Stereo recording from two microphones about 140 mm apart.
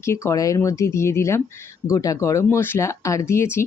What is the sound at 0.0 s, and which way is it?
Speech, 20° left (ahead or behind).